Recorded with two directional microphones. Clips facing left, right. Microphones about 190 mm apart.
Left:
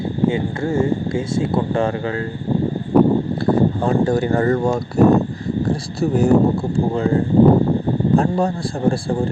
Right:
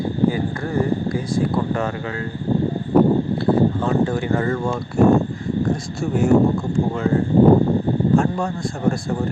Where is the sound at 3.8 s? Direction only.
35° left (ahead or behind).